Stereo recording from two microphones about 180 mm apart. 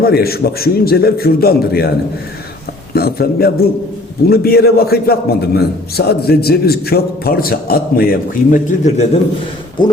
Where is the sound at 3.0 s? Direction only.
60° left (ahead or behind).